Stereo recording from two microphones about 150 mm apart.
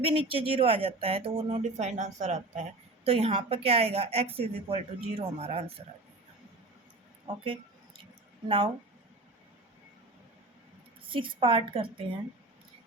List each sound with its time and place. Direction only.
0.0 s speech: 40° right (ahead or behind)
8.4 s speech: 35° right (ahead or behind)
11.0 s speech: 35° right (ahead or behind)